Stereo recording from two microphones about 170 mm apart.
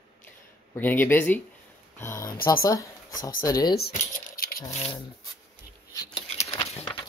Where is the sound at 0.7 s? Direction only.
10° left (ahead or behind).